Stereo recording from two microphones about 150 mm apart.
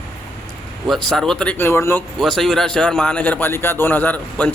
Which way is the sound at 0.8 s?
Centre (ahead or behind).